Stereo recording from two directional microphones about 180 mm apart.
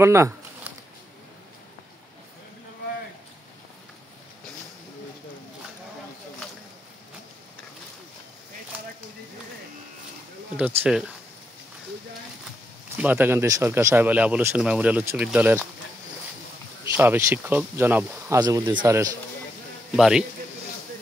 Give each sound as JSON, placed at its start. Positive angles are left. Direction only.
{"t": 0.0, "sound": "a sound", "side_deg": -15}
{"t": 10.6, "sound": "speech", "side_deg": -5}
{"t": 12.9, "sound": "speech", "side_deg": -10}
{"t": 16.9, "sound": "speech", "side_deg": -10}
{"t": 18.4, "sound": "speech", "side_deg": -25}
{"t": 20.0, "sound": "a man's voice", "side_deg": 0}